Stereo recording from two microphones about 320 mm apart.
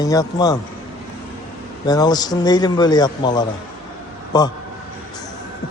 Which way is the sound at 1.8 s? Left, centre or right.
Centre.